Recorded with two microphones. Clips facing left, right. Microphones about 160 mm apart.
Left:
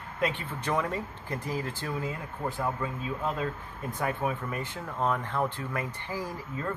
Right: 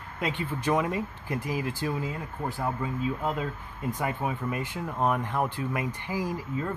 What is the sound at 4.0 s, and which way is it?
Speech, 15° right (ahead or behind).